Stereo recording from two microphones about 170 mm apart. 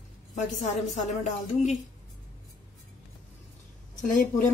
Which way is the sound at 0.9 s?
45° left (ahead or behind).